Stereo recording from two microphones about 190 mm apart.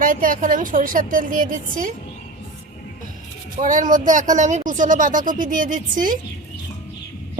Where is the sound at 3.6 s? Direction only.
45° right (ahead or behind).